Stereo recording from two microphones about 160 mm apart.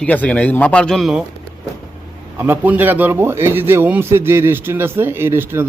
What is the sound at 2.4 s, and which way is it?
A man's voice, 10° right (ahead or behind).